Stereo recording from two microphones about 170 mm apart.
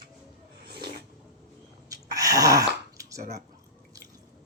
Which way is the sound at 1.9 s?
20° right (ahead or behind).